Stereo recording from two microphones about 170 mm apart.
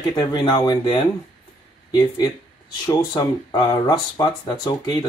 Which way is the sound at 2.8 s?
25° left (ahead or behind).